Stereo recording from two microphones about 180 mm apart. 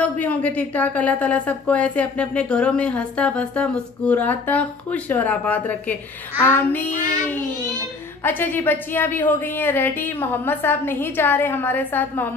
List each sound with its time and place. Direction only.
0.0 s a woman's voice: 10° left (ahead or behind)